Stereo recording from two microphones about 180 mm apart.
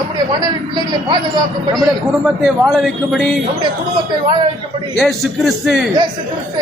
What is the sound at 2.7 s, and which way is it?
Speech, centre (ahead or behind).